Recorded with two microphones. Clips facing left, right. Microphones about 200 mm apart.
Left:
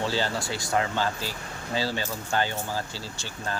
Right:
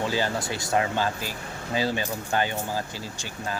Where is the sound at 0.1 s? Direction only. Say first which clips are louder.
Right 1 dB; 20° right (ahead or behind).